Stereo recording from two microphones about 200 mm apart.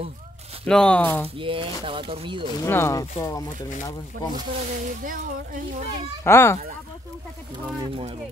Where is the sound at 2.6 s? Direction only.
15° left (ahead or behind).